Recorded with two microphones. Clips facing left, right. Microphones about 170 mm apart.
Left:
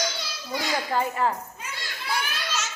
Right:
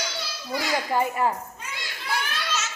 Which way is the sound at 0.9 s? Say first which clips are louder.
Right 1 dB; 15° right (ahead or behind).